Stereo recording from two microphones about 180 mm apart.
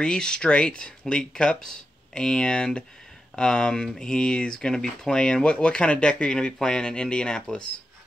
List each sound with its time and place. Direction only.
0.0 s speech: 5° left (ahead or behind)